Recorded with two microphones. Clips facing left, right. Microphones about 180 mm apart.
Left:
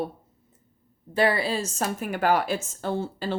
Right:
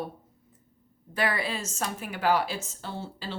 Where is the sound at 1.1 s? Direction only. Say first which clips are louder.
Left 6 dB; 30° left (ahead or behind).